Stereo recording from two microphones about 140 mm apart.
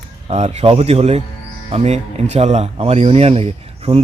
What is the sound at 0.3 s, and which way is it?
A man's voice, 50° right (ahead or behind).